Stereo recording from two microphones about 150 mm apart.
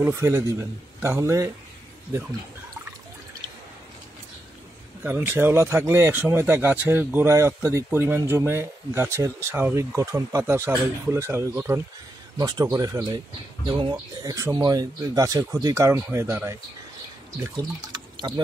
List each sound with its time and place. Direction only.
0.0 s speech: 20° right (ahead or behind)
5.0 s speech: 15° right (ahead or behind)
17.9 s a sound: 30° right (ahead or behind)